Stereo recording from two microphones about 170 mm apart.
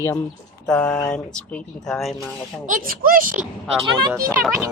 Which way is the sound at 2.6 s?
55° right (ahead or behind).